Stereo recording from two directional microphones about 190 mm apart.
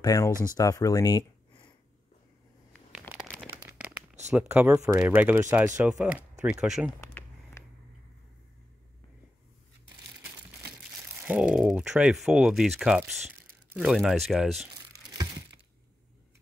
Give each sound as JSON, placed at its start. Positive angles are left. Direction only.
{"t": 0.0, "sound": "speech", "side_deg": 20}
{"t": 3.1, "sound": "crumpling", "side_deg": 10}
{"t": 4.4, "sound": "speech", "side_deg": -10}
{"t": 11.2, "sound": "speech", "side_deg": -5}